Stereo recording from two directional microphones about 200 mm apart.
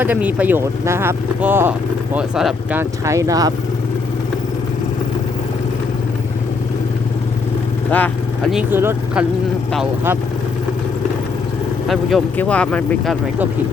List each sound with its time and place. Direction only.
0.0 s speech: 10° right (ahead or behind)
3.0 s speech: 15° right (ahead or behind)
7.9 s vehicle: 5° left (ahead or behind)
8.5 s speech: 10° right (ahead or behind)
11.9 s speech: centre (ahead or behind)